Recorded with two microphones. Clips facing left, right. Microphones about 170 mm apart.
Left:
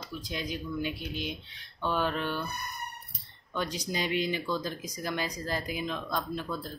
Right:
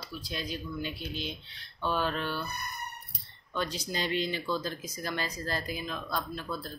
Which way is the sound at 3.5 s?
15° left (ahead or behind).